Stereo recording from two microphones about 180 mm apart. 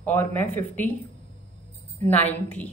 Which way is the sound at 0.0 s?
10° left (ahead or behind).